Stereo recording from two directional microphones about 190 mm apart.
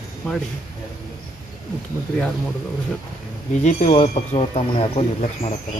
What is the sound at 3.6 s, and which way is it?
Speech, 35° left (ahead or behind).